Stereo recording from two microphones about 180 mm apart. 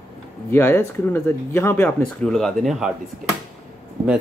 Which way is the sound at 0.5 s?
15° left (ahead or behind).